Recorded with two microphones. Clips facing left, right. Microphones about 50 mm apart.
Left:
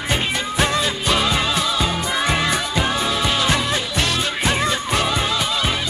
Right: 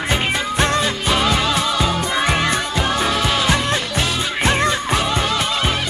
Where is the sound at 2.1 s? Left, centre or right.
Centre.